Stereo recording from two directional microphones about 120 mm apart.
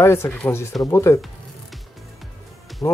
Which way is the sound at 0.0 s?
20° left (ahead or behind).